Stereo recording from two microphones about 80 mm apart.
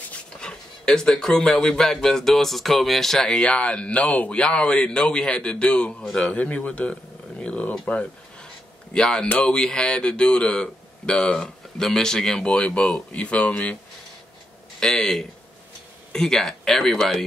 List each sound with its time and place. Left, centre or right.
0.4 s speech: centre
14.8 s speech: centre